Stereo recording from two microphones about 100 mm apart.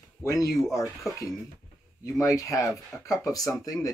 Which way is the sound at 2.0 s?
30° left (ahead or behind).